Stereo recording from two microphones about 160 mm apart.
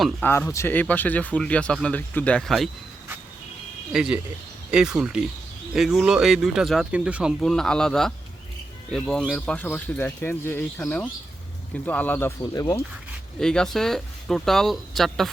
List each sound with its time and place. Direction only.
0.0 s speech: 10° left (ahead or behind)
3.9 s speech: 5° right (ahead or behind)
12.4 s speech: 20° left (ahead or behind)
13.4 s speech: 5° left (ahead or behind)